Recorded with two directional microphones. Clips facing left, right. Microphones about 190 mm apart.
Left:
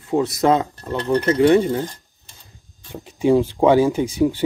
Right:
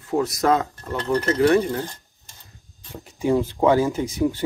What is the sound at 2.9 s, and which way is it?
Speech, 20° left (ahead or behind).